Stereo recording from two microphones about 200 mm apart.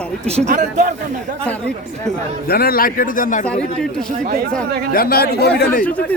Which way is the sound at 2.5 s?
50° left (ahead or behind).